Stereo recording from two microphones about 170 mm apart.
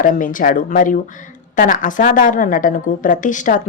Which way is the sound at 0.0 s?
50° left (ahead or behind).